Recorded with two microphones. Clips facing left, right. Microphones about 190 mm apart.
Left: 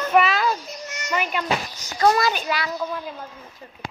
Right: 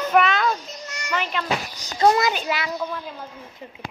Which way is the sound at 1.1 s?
10° left (ahead or behind).